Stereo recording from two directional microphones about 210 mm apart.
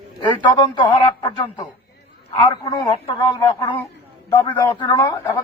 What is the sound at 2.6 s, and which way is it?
A man's voice, 20° left (ahead or behind).